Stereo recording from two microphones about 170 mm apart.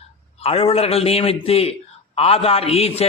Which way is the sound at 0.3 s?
35° left (ahead or behind).